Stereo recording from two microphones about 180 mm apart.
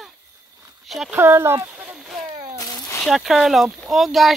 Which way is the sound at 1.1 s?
15° right (ahead or behind).